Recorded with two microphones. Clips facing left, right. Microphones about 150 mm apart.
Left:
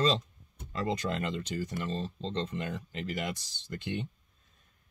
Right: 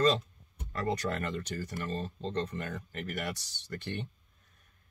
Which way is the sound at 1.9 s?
55° right (ahead or behind).